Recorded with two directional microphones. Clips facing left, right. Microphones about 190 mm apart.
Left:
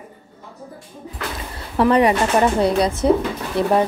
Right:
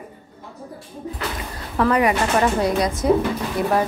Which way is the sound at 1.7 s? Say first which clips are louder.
Left 3 dB; 30° left (ahead or behind).